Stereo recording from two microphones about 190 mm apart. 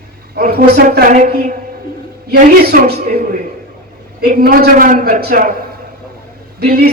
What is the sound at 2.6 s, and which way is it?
Speech, 55° right (ahead or behind).